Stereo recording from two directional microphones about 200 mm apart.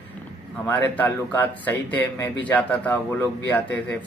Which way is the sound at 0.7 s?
10° left (ahead or behind).